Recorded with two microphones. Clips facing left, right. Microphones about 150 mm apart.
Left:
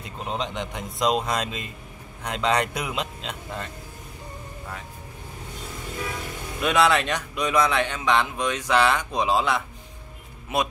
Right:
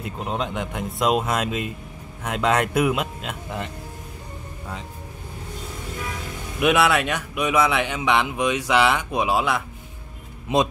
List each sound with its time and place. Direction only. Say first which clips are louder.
0.0 s a man's voice: right 3 dB; 5° right (ahead or behind)
6.6 s a man's voice: right 2 dB; 5° right (ahead or behind)